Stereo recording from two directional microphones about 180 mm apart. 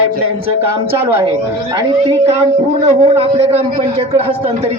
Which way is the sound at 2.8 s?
35° right (ahead or behind).